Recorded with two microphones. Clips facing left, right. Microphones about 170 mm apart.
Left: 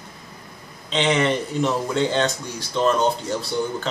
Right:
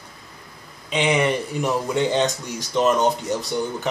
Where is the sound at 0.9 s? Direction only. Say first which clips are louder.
Even; 10° right (ahead or behind).